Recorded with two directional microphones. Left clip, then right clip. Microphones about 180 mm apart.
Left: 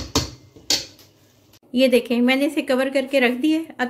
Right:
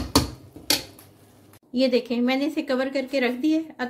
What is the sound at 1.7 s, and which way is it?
A woman's voice, 5° left (ahead or behind).